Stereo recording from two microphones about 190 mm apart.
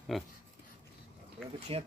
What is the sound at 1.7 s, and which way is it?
Speech, 30° right (ahead or behind).